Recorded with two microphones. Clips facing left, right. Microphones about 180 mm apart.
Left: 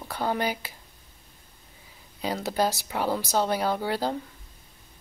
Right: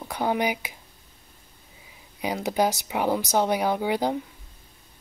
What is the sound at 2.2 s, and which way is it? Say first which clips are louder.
Speech: right 2 dB; 15° right (ahead or behind).